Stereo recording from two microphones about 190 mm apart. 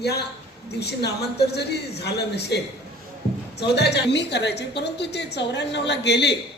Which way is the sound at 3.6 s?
60° left (ahead or behind).